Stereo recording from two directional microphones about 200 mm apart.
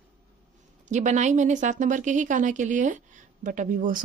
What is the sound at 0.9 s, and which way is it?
A woman's voice, 35° right (ahead or behind).